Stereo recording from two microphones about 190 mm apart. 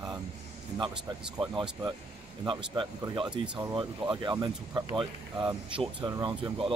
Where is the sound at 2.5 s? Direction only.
25° right (ahead or behind).